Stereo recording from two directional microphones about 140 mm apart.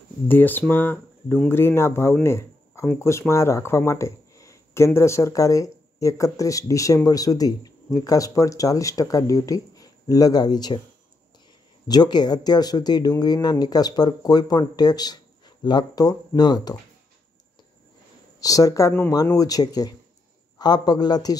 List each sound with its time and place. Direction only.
0.3 s speech: 15° left (ahead or behind); by 10.8 s 30° left (ahead or behind)
11.9 s speech: 30° left (ahead or behind)
18.4 s speech: 25° left (ahead or behind)